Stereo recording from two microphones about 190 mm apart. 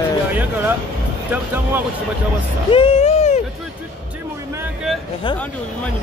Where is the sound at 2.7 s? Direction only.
30° left (ahead or behind).